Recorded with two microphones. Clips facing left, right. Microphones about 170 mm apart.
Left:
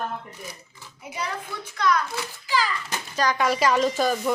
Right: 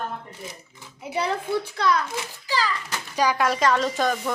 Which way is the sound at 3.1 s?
10° right (ahead or behind).